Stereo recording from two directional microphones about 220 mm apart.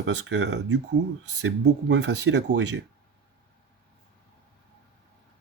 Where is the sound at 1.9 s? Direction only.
50° right (ahead or behind).